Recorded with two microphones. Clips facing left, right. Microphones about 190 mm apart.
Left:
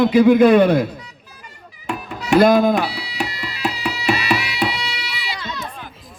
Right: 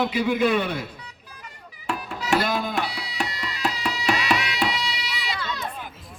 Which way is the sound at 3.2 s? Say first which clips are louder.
Left 3 dB; 5° left (ahead or behind).